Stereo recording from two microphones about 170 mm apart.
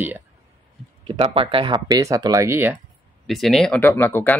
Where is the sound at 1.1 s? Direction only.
30° right (ahead or behind); by 2.7 s 15° right (ahead or behind).